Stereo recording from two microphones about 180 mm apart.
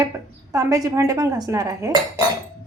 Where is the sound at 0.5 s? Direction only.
20° right (ahead or behind).